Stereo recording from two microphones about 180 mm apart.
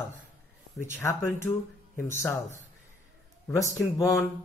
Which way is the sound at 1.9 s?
10° left (ahead or behind).